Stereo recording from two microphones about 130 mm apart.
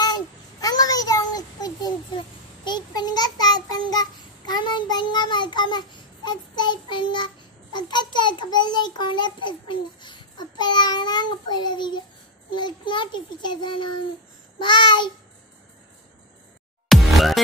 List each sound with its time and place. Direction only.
0.0 s child singing: 30° left (ahead or behind)
2.1 s a child's voice: 35° left (ahead or behind)
16.9 s music: centre (ahead or behind)